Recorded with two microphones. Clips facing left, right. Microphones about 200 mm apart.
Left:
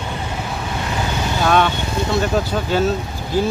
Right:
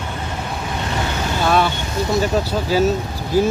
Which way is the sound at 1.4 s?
5° right (ahead or behind).